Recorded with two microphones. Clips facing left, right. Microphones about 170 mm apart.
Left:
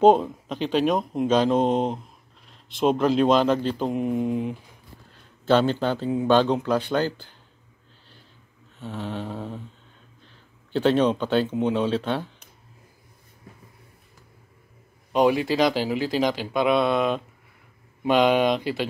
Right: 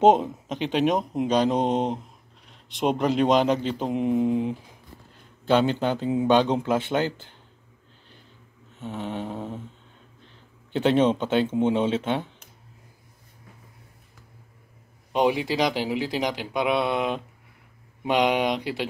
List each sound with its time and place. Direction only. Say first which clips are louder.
0.0 s speech: left 1 dB; 20° right (ahead or behind)
8.8 s speech: even; 20° right (ahead or behind)
10.7 s speech: even; 20° right (ahead or behind)
15.1 s speech: left 3 dB; 15° right (ahead or behind)